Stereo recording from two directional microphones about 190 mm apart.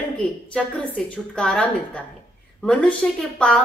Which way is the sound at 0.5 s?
5° left (ahead or behind).